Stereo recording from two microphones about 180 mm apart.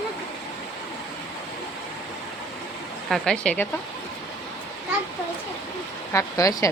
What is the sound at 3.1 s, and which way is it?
Speech, 5° left (ahead or behind).